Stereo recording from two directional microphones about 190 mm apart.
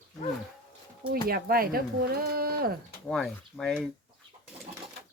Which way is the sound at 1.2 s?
50° right (ahead or behind).